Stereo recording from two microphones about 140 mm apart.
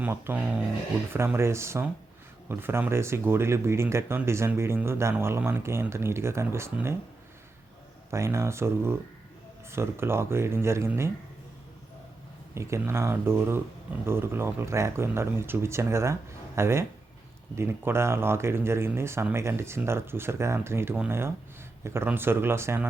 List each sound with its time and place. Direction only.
0.0 s speech: 15° right (ahead or behind)
8.1 s speech: 20° right (ahead or behind)
12.5 s speech: 20° right (ahead or behind)